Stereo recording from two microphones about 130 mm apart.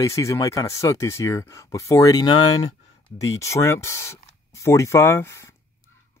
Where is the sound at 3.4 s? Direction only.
20° left (ahead or behind).